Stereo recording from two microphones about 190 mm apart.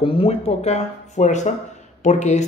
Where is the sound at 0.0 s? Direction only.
30° left (ahead or behind).